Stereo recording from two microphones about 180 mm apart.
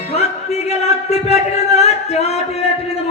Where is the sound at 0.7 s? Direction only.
35° left (ahead or behind).